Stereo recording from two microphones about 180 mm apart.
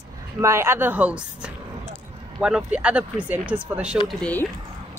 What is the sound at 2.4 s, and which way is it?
Speech, 5° right (ahead or behind).